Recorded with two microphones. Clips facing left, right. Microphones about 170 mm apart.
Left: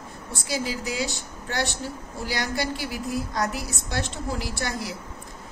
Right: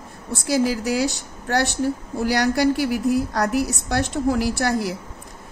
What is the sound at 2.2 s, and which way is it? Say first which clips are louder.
A woman's voice: right 10 dB; 60° right (ahead or behind).